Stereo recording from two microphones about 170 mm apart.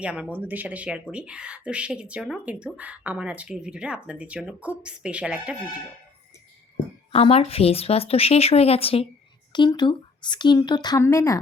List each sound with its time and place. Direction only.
0.0 s speech: 5° right (ahead or behind)
7.1 s speech: 35° left (ahead or behind); by 11.3 s 15° left (ahead or behind)